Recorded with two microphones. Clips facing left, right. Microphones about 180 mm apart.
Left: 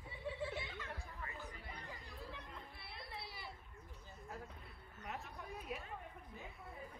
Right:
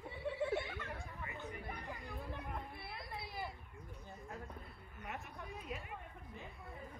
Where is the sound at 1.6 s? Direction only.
60° right (ahead or behind).